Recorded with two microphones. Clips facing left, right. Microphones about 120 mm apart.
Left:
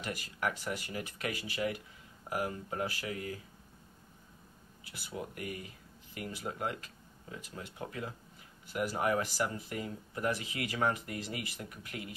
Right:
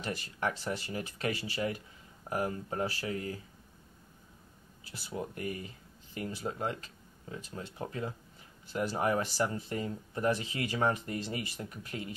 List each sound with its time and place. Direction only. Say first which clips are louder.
0.0 s speech: right 2 dB; 30° right (ahead or behind)
4.8 s speech: right 3 dB; 30° right (ahead or behind)